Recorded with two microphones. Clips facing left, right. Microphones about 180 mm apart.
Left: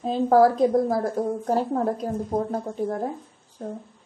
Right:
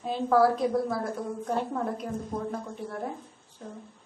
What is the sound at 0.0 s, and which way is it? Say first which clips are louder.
A woman's voice: left 5 dB; 35° left (ahead or behind).